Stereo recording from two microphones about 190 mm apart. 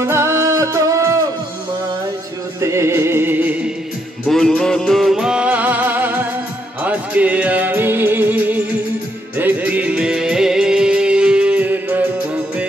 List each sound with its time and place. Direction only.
0.0 s music: 15° right (ahead or behind)
2.6 s music: 15° right (ahead or behind)
4.3 s music: 5° left (ahead or behind)